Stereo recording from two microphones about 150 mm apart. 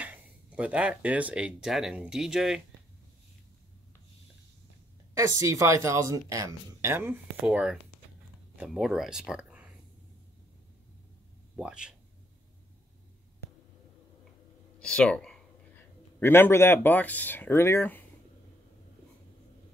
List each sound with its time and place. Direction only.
0.0 s speech: 10° right (ahead or behind)
5.1 s speech: 20° right (ahead or behind)
7.4 s speech: 5° right (ahead or behind)
11.5 s speech: 5° right (ahead or behind)
14.8 s a sound: 5° left (ahead or behind)
16.2 s speech: 15° left (ahead or behind)